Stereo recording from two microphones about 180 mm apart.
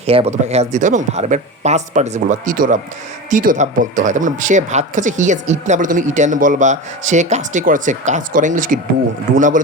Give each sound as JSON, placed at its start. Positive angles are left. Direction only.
{"t": 0.0, "sound": "speech", "side_deg": -35}